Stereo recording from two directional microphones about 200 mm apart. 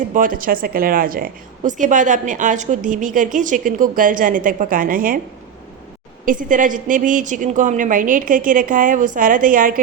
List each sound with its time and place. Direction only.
0.1 s a woman's voice: 45° right (ahead or behind)
6.2 s a woman's voice: 40° right (ahead or behind)